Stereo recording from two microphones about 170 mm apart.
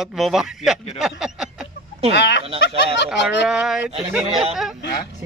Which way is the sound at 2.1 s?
90° left.